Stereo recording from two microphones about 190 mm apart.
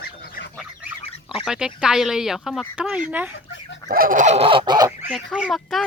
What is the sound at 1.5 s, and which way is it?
Speech, 5° right (ahead or behind).